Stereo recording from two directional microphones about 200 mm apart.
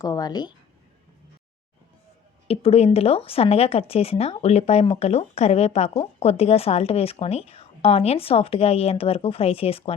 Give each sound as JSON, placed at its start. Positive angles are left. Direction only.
{"t": 0.0, "sound": "speech", "side_deg": 20}
{"t": 2.5, "sound": "a woman's voice", "side_deg": 30}